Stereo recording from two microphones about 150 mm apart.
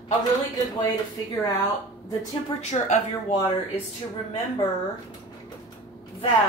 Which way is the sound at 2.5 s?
50° left (ahead or behind).